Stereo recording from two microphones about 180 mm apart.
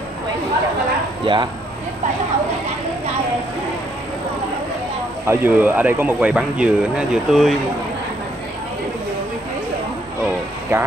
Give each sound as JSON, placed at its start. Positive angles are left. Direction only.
{"t": 1.2, "sound": "speech", "side_deg": -25}
{"t": 5.2, "sound": "speech", "side_deg": -15}
{"t": 10.7, "sound": "speech", "side_deg": -15}